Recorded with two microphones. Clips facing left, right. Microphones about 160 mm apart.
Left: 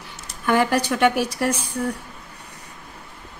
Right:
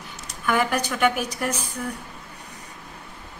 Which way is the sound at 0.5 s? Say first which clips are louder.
Left 4 dB; 35° left (ahead or behind).